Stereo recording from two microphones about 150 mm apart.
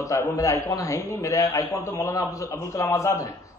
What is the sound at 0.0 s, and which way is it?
A man's voice, 20° left (ahead or behind).